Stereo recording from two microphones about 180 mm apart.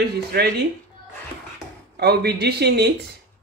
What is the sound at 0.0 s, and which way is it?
Speech, 60° right (ahead or behind).